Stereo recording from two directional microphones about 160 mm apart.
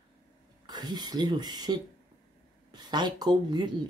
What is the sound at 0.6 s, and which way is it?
Speech, 25° right (ahead or behind).